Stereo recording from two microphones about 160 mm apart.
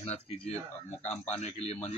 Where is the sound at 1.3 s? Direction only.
40° left (ahead or behind).